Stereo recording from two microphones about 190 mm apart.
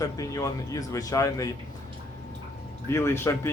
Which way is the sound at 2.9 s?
15° left (ahead or behind).